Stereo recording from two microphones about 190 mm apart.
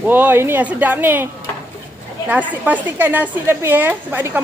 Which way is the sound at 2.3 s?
10° right (ahead or behind).